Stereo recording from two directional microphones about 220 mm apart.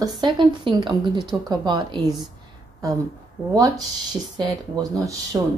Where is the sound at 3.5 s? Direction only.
15° right (ahead or behind).